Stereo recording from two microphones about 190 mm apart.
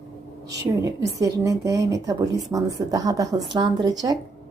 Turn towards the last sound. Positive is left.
turn(degrees=-20)  # may be behind; listen again after turning